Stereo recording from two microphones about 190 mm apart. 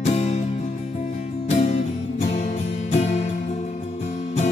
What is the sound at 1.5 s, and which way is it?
Music, 40° left (ahead or behind).